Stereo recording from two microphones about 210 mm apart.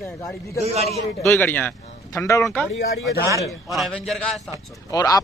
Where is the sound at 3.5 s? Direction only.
Centre (ahead or behind).